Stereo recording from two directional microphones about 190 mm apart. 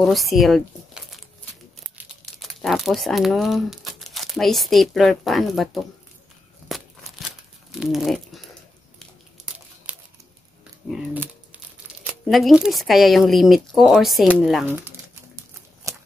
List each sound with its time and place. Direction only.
0.0 s crumpling: centre (ahead or behind)
2.4 s speech: centre (ahead or behind)
6.7 s a sound: centre (ahead or behind)
7.7 s speech: centre (ahead or behind)
9.9 s a sound: 5° right (ahead or behind)
10.9 s speech: 5° right (ahead or behind)
12.3 s speech: centre (ahead or behind)
15.9 s shuffling cards: 15° right (ahead or behind)